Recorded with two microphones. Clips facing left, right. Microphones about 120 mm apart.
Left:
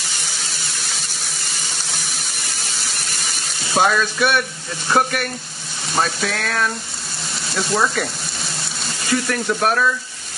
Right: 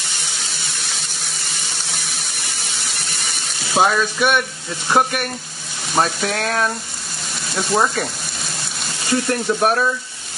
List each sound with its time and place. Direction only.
0.4 s a sound: centre (ahead or behind)
3.6 s sizzle: 10° right (ahead or behind)
4.8 s speech: 15° right (ahead or behind)
6.3 s frying: 30° right (ahead or behind)
7.5 s speech: 15° right (ahead or behind)
9.1 s speech: 20° right (ahead or behind)